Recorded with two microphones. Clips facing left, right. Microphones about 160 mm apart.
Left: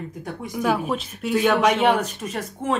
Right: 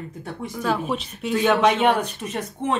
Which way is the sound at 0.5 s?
10° left (ahead or behind).